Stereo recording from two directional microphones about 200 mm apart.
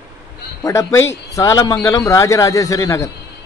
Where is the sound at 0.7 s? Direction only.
15° left (ahead or behind).